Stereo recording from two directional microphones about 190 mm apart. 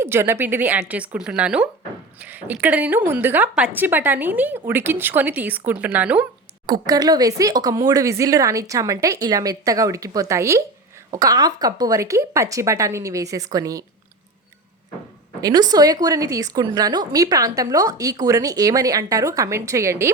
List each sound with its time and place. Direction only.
0.0 s a woman's voice: 10° right (ahead or behind)
6.7 s a woman's voice: 20° right (ahead or behind)
15.4 s a woman's voice: 20° right (ahead or behind)